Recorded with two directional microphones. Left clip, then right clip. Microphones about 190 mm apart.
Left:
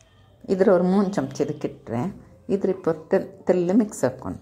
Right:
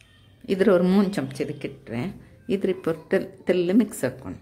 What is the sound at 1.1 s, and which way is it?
Speech, 5° left (ahead or behind).